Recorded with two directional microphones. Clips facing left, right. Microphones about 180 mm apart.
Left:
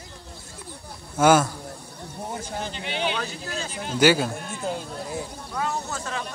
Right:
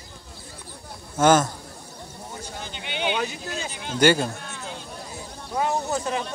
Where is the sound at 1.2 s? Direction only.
10° left (ahead or behind).